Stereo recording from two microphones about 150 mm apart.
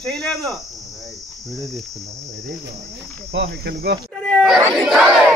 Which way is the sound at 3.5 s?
90° right.